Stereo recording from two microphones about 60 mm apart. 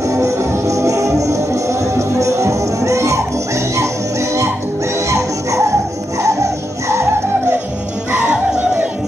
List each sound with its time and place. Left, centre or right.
0.0 s music: right